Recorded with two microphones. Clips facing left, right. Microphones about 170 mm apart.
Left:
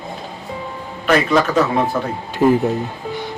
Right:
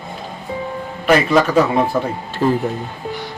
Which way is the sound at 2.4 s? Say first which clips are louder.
Left 3 dB; 20° left (ahead or behind).